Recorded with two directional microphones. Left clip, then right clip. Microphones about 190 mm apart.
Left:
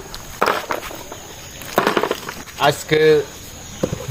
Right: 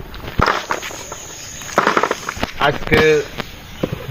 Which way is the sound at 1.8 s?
25° left (ahead or behind).